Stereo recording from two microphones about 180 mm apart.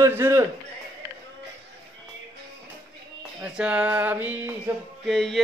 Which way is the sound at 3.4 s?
5° right (ahead or behind).